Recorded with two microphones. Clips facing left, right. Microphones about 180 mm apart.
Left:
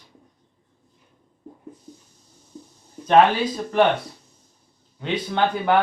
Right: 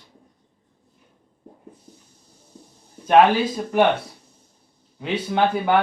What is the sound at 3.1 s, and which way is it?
Speech, 5° right (ahead or behind).